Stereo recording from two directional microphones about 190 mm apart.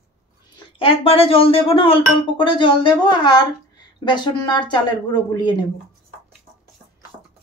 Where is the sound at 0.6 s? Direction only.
30° left (ahead or behind).